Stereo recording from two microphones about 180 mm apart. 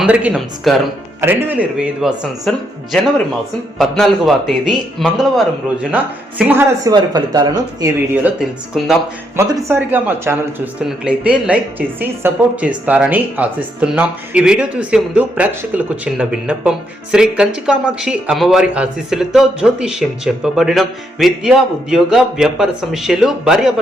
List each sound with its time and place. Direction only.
0.0 s a woman's voice: 10° right (ahead or behind)
1.2 s a woman's voice: 10° right (ahead or behind)
6.5 s speech: 15° right (ahead or behind)
8.1 s a woman's voice: 5° right (ahead or behind)
9.3 s a woman's voice: 15° right (ahead or behind)